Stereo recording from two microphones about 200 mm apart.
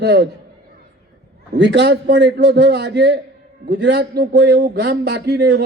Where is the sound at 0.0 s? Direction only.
60° right (ahead or behind).